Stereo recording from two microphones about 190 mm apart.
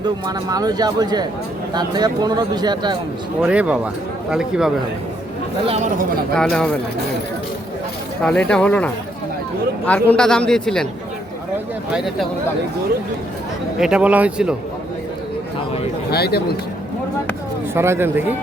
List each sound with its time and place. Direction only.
0.0 s speech: 20° right (ahead or behind)
3.4 s a man's voice: 5° right (ahead or behind)
5.6 s speech: 30° right (ahead or behind)
6.3 s a man's voice: 5° left (ahead or behind)
8.2 s a man's voice: 5° left (ahead or behind)
11.9 s a man's voice: 5° right (ahead or behind)
13.7 s a man's voice: 5° right (ahead or behind)
16.0 s speech: 55° left (ahead or behind)
17.7 s speech: 15° right (ahead or behind)